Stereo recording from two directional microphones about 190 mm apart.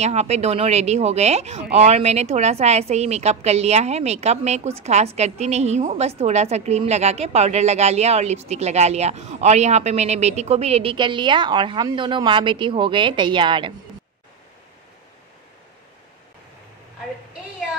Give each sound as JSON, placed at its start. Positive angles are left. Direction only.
{"t": 0.0, "sound": "speech", "side_deg": -35}